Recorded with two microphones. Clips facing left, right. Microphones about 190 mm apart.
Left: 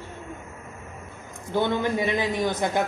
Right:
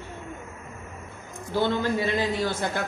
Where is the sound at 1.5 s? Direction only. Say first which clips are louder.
Left 1 dB; 20° left (ahead or behind).